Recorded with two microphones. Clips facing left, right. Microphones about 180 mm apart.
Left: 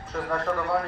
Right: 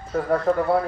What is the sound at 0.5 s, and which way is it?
Speech, 35° right (ahead or behind).